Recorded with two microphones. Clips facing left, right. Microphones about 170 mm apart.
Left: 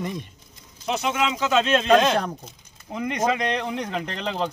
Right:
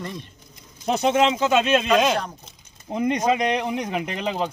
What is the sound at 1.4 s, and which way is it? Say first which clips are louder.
Speech: right 2 dB; 15° right (ahead or behind).